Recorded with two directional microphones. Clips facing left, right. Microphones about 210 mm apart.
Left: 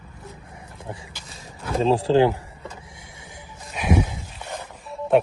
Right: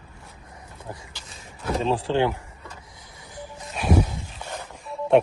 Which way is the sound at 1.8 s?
35° left (ahead or behind).